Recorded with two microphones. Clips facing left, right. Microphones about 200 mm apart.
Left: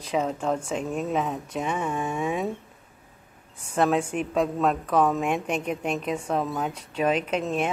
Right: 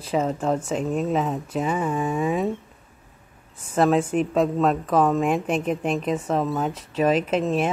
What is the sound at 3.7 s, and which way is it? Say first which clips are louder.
A woman's voice: right 4 dB; 5° right (ahead or behind).